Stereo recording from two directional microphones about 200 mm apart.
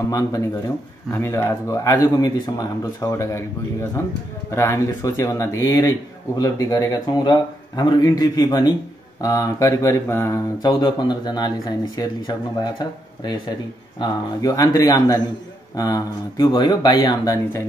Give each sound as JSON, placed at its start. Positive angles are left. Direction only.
{"t": 0.1, "sound": "speech", "side_deg": 15}
{"t": 4.5, "sound": "speech", "side_deg": 15}